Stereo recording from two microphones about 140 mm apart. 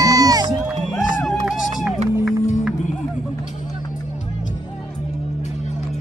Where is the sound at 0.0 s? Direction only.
25° right (ahead or behind).